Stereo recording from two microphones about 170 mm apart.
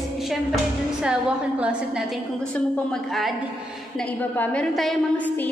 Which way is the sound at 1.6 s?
5° right (ahead or behind).